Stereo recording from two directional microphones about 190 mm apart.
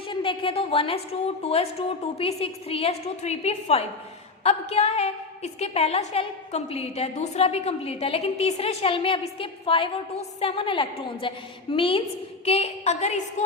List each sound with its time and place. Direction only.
0.1 s a woman's voice: 25° left (ahead or behind)